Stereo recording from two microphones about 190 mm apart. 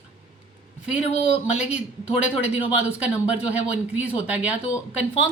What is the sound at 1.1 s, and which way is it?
Speech, 35° left (ahead or behind).